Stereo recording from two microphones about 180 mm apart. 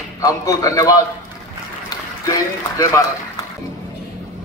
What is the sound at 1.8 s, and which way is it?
Run, 20° left (ahead or behind).